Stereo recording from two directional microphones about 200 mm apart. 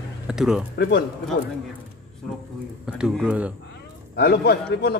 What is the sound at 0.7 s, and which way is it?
Speech, 55° left (ahead or behind).